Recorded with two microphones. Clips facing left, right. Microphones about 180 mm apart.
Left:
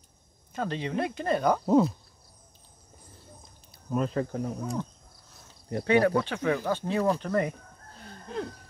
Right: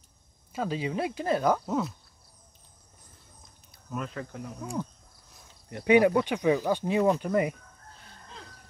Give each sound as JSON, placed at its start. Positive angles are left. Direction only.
{"t": 0.5, "sound": "speech", "side_deg": -5}
{"t": 1.7, "sound": "speech", "side_deg": 30}
{"t": 3.7, "sound": "speech", "side_deg": 35}
{"t": 4.8, "sound": "speech", "side_deg": -10}
{"t": 8.3, "sound": "a sound", "side_deg": 60}